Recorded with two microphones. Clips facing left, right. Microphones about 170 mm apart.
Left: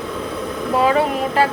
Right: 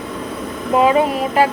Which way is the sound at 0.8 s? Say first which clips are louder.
Right 2 dB; 20° right (ahead or behind).